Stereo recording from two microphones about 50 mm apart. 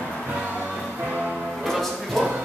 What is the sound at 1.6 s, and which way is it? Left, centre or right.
Music, centre.